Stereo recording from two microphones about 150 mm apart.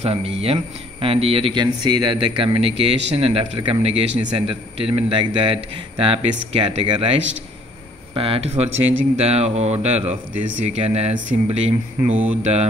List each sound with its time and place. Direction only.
0.0 s speech: 40° right (ahead or behind)
12.1 s speech: 10° right (ahead or behind)